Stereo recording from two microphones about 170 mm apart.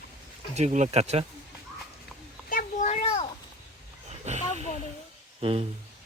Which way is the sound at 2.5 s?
50° left (ahead or behind).